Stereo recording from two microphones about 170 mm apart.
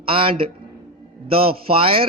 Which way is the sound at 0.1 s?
30° right (ahead or behind).